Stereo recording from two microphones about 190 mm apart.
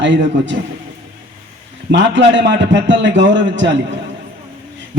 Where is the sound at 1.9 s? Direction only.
70° right (ahead or behind).